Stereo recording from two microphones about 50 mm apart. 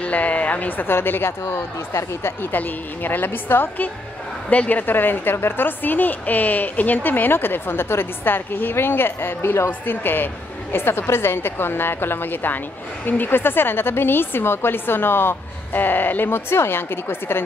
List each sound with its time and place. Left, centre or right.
0.0 s a woman's voice: left
1.4 s speech: left
2.5 s a woman's voice: left